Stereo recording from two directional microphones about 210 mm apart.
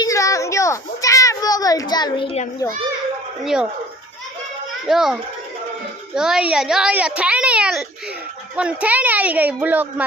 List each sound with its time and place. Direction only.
0.0 s children playing: 15° left (ahead or behind)
3.4 s a child's voice: 5° right (ahead or behind)
4.9 s a child's voice: centre (ahead or behind)
6.1 s a child's voice: 5° right (ahead or behind)